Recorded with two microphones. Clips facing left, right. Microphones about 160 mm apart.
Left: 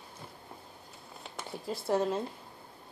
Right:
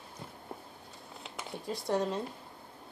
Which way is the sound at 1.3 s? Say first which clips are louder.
Left 1 dB; 5° left (ahead or behind).